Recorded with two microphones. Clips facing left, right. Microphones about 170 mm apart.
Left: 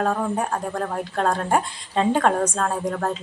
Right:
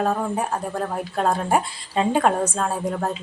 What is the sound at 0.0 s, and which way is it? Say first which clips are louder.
A woman's voice: even; 5° right (ahead or behind).